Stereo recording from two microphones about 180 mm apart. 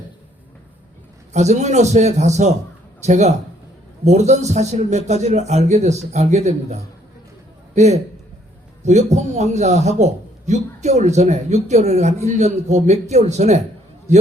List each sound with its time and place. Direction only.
1.3 s a man's voice: 40° right (ahead or behind)
7.8 s a man's voice: 40° right (ahead or behind)